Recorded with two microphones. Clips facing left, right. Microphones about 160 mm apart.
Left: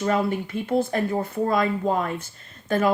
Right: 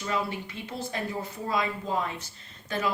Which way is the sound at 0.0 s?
50° left (ahead or behind).